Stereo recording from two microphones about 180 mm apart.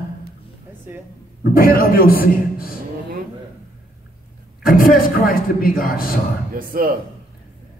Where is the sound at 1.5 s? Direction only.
55° left (ahead or behind).